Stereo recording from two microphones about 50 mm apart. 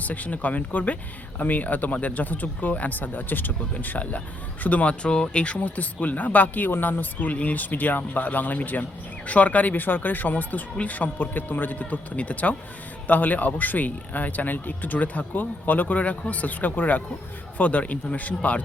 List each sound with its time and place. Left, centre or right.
0.0 s speech: left